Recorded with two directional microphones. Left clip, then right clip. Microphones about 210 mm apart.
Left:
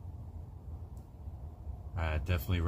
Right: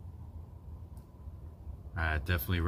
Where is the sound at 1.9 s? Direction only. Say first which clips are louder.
Right 4 dB; 15° right (ahead or behind).